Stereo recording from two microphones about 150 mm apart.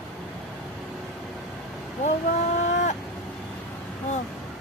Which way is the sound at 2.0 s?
50° left (ahead or behind).